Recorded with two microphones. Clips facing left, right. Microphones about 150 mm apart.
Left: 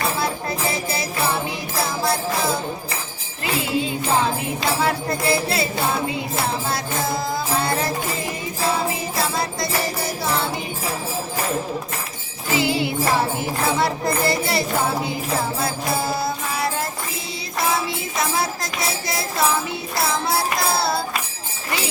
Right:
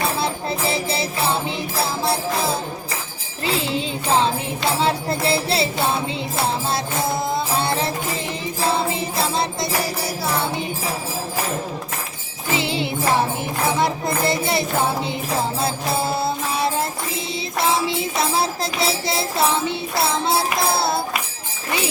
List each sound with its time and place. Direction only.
0.7 s music: 25° right (ahead or behind)
7.6 s music: 25° right (ahead or behind)
12.5 s music: 25° right (ahead or behind)